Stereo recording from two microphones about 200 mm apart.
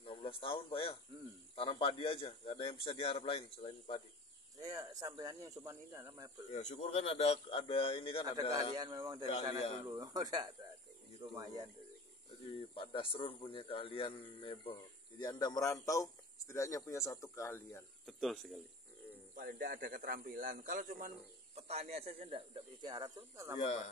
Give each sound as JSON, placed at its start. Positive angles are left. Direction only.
{"t": 0.0, "sound": "a man's voice", "side_deg": 25}
{"t": 4.6, "sound": "speech", "side_deg": -15}
{"t": 6.5, "sound": "a man's voice", "side_deg": 35}
{"t": 8.7, "sound": "speech", "side_deg": -20}
{"t": 12.7, "sound": "a man's voice", "side_deg": 25}
{"t": 18.0, "sound": "speech", "side_deg": 0}
{"t": 19.3, "sound": "speech", "side_deg": -45}
{"t": 21.5, "sound": "speech", "side_deg": -30}